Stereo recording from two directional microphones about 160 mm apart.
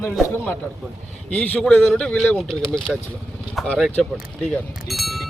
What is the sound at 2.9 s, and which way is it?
Speech, 5° right (ahead or behind).